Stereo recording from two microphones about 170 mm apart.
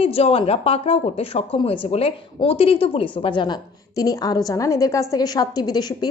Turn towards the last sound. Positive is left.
turn(degrees=25)  # may be behind; listen again after turning